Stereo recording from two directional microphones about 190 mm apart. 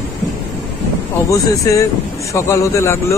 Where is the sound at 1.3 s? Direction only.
15° left (ahead or behind).